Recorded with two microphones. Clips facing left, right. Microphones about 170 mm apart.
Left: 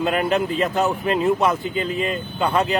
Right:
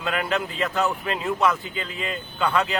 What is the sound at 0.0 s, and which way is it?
Speech, 40° left (ahead or behind).